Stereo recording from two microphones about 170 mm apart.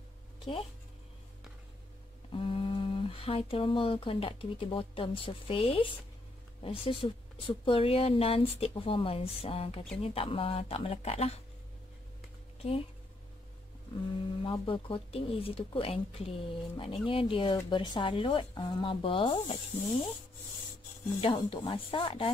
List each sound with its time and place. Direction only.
0.4 s speech: 30° left (ahead or behind)
2.3 s speech: 30° left (ahead or behind)
14.4 s speech: 30° left (ahead or behind)
21.2 s speech: 30° left (ahead or behind)